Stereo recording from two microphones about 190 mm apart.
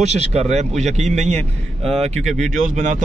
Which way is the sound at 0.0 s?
35° right (ahead or behind).